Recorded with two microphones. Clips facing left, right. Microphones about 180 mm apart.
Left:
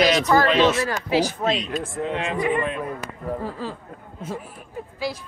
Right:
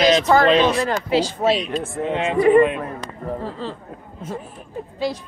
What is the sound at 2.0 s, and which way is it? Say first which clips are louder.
Speech: right 9 dB; 25° right (ahead or behind).